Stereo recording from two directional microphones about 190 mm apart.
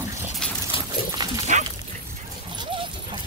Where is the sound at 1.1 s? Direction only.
20° right (ahead or behind).